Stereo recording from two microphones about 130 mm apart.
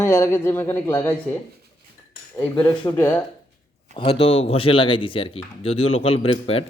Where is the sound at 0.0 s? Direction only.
20° left (ahead or behind).